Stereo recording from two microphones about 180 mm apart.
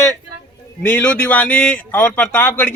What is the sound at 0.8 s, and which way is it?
Speech, 10° left (ahead or behind).